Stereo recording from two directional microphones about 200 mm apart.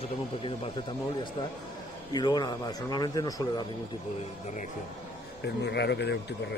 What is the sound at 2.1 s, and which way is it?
A man's voice, 20° left (ahead or behind).